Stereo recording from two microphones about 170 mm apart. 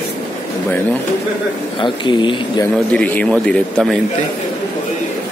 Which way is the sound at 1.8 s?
30° left (ahead or behind).